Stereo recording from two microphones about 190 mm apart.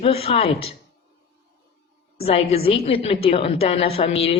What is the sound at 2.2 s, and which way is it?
A woman's voice, 30° left (ahead or behind).